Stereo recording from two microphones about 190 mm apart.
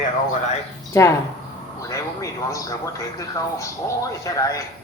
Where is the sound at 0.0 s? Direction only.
40° left (ahead or behind).